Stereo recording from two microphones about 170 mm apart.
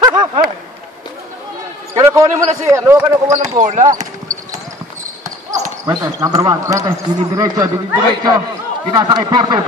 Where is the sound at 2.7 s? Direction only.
15° right (ahead or behind).